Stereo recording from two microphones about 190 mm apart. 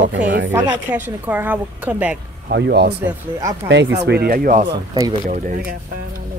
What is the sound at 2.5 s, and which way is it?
Speech, 60° right (ahead or behind).